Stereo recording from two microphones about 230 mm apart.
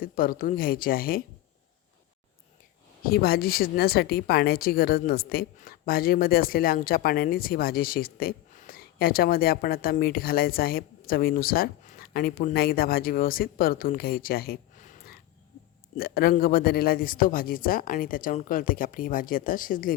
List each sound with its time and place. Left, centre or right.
0.0 s a woman's voice: left
3.0 s a woman's voice: left